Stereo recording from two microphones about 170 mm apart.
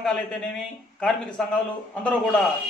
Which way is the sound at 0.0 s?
5° left (ahead or behind).